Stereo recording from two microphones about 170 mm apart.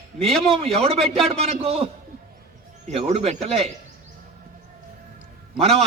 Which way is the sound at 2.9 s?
40° right (ahead or behind).